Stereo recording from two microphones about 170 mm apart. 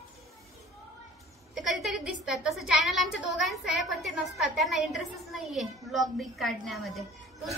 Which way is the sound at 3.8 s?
Centre (ahead or behind).